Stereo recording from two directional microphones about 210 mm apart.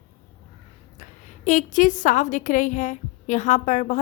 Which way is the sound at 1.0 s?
35° left (ahead or behind).